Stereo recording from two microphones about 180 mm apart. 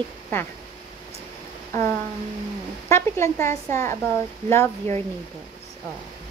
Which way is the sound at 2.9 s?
15° left (ahead or behind).